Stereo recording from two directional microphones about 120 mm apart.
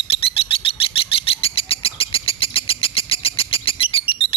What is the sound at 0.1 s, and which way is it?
Bird, 50° left (ahead or behind).